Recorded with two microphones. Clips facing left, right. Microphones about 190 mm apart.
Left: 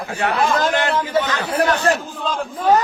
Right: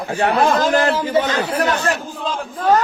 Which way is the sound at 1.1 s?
20° right (ahead or behind).